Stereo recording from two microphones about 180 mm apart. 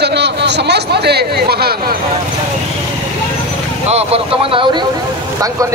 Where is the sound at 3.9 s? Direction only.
30° right (ahead or behind).